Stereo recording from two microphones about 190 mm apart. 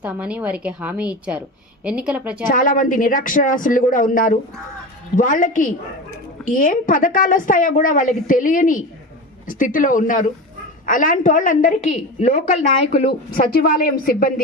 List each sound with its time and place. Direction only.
0.0 s a woman's voice: 5° right (ahead or behind)
2.5 s speech: 45° left (ahead or behind)
13.5 s speech: 50° left (ahead or behind)